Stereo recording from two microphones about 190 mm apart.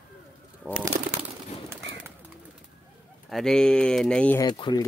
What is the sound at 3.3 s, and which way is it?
Speech, 5° left (ahead or behind).